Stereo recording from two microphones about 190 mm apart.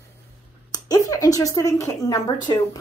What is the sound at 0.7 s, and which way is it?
A woman's voice, 20° left (ahead or behind).